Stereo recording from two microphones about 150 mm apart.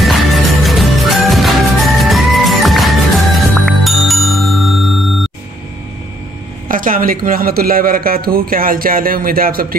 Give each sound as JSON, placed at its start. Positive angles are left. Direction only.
{"t": 0.0, "sound": "music", "side_deg": 0}
{"t": 6.7, "sound": "a man's voice", "side_deg": -65}